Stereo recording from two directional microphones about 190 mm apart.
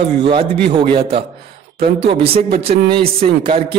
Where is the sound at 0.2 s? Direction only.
25° right (ahead or behind).